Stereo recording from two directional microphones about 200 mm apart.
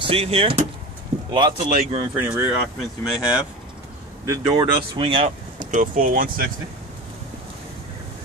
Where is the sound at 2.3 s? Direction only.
10° right (ahead or behind).